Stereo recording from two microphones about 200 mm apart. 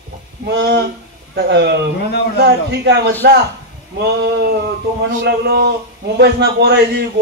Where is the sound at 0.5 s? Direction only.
55° right (ahead or behind).